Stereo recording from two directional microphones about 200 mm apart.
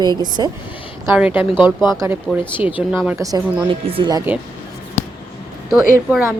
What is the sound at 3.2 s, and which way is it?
A woman's voice, 15° right (ahead or behind).